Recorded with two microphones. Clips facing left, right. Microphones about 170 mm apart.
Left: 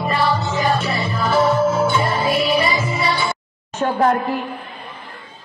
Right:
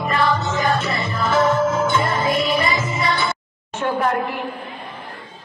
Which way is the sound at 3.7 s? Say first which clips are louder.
Left 3 dB; 40° left (ahead or behind).